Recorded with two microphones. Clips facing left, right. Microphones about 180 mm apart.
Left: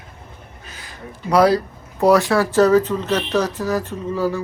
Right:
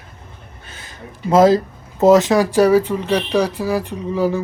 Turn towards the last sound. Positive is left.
turn(degrees=-15)  # may be behind; listen again after turning